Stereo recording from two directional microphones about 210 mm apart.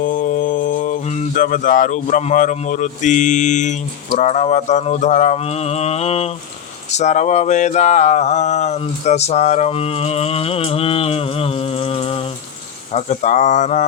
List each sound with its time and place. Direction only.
0.0 s mantra: 40° left (ahead or behind)